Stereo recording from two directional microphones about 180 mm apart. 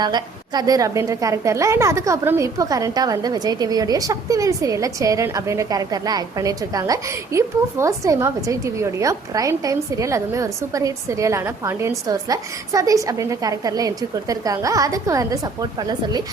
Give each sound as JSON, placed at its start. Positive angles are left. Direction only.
{"t": 0.0, "sound": "a woman's voice", "side_deg": -25}